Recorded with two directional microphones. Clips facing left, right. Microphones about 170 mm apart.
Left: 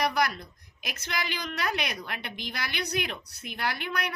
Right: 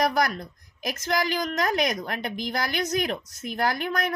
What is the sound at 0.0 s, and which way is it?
A woman's voice, 45° right (ahead or behind).